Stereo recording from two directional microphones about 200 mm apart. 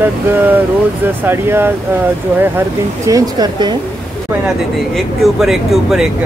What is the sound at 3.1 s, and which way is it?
Speech, 20° right (ahead or behind).